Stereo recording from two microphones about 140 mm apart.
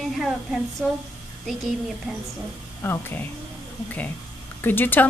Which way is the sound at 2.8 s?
15° left (ahead or behind).